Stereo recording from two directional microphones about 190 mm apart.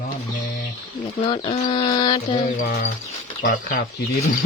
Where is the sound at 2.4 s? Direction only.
55° left (ahead or behind).